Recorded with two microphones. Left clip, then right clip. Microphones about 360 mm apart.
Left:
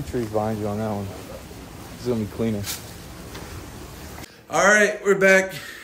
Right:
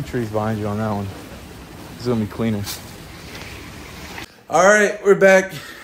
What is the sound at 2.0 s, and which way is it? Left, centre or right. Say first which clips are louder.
Speech: right 3 dB; right.